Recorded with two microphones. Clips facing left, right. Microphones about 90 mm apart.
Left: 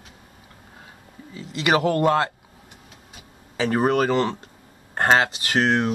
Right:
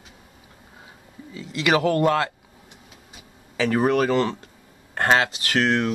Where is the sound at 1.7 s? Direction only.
25° left (ahead or behind).